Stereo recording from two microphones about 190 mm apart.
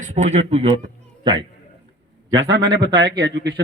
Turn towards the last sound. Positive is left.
turn(degrees=-70)  # may be behind; listen again after turning